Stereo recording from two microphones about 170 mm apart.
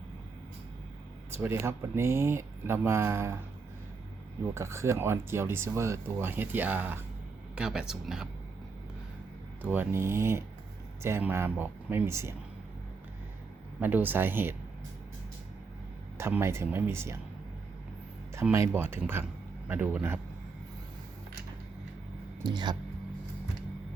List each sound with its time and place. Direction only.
1.4 s speech: 15° right (ahead or behind)
4.5 s speech: 15° right (ahead or behind)
9.6 s speech: 10° right (ahead or behind)
13.7 s speech: 10° right (ahead or behind)
16.1 s speech: 15° right (ahead or behind)
18.3 s speech: 15° right (ahead or behind)
22.4 s speech: 25° right (ahead or behind)